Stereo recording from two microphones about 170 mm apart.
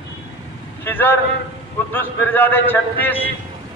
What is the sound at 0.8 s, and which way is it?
A man's voice, 10° left (ahead or behind).